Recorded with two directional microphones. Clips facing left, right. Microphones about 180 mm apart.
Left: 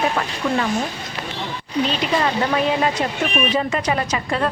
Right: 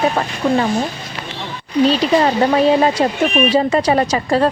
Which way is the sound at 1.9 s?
35° right (ahead or behind).